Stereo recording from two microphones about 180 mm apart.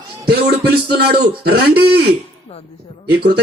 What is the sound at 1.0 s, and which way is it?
Speech, 60° right (ahead or behind).